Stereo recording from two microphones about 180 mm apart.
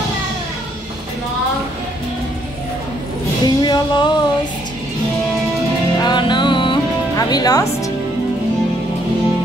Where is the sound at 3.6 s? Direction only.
25° left (ahead or behind).